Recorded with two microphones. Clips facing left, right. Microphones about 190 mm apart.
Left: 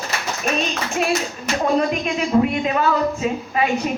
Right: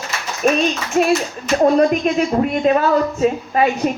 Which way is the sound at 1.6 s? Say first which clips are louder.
Right 6 dB; 45° right (ahead or behind).